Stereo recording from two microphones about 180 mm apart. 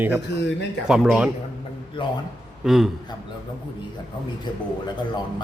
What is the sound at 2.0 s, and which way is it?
Speech, 30° left (ahead or behind).